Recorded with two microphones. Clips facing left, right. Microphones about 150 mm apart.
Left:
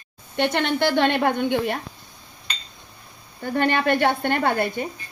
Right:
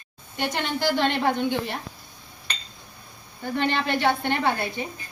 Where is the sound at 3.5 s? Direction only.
50° left (ahead or behind).